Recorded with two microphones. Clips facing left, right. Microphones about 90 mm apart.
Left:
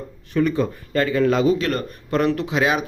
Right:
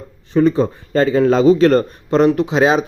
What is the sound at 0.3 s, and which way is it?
A man's voice, 30° right (ahead or behind).